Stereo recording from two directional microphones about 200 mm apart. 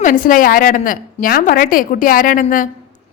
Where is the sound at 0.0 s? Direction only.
40° left (ahead or behind).